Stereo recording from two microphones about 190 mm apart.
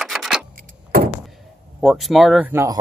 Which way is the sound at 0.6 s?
50° right (ahead or behind).